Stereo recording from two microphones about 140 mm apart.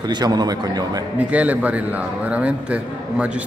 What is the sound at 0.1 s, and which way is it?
Speech, 30° right (ahead or behind).